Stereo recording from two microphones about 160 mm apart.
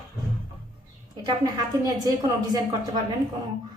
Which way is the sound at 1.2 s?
25° right (ahead or behind).